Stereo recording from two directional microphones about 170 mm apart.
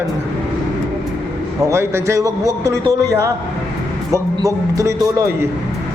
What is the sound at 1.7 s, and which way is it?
A man's voice, 15° right (ahead or behind).